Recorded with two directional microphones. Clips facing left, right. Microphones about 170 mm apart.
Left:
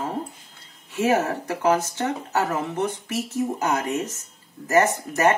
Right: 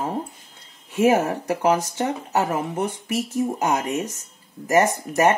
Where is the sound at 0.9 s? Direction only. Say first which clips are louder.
Right 3 dB; 15° right (ahead or behind).